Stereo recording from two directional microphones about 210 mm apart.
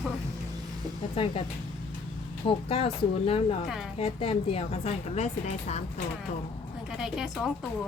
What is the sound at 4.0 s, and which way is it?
A woman's voice, 25° left (ahead or behind).